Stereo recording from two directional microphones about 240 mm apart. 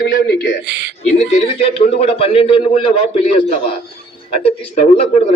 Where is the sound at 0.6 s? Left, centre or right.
Right.